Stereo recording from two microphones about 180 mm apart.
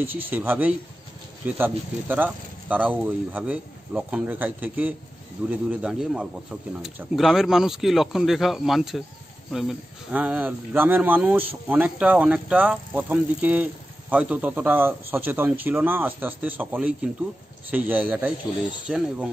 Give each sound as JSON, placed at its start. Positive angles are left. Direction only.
{"t": 0.0, "sound": "speech", "side_deg": -10}